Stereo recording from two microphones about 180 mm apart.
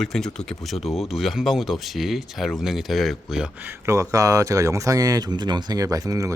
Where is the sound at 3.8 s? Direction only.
15° right (ahead or behind).